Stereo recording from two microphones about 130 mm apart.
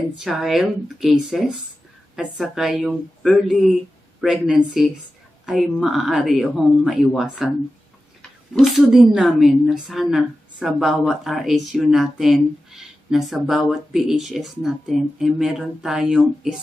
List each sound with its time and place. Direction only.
0.2 s a woman's voice: 5° right (ahead or behind)
8.5 s a woman's voice: centre (ahead or behind)